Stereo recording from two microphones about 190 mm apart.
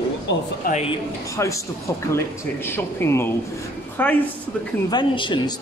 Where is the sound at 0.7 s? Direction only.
50° left (ahead or behind).